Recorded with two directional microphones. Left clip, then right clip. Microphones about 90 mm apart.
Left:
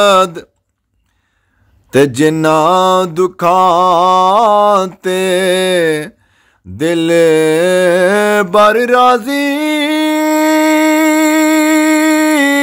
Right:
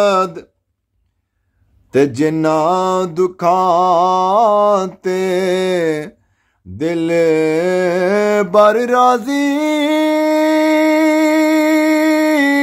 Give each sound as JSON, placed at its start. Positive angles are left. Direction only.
{"t": 0.0, "sound": "mantra", "side_deg": 35}
{"t": 1.9, "sound": "mantra", "side_deg": 30}
{"t": 5.0, "sound": "music", "side_deg": 20}
{"t": 6.8, "sound": "mantra", "side_deg": 30}
{"t": 8.5, "sound": "mantra", "side_deg": 5}
{"t": 10.1, "sound": "music", "side_deg": 20}